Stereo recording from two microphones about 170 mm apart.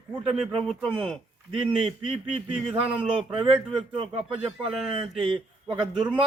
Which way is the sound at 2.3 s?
35° right (ahead or behind).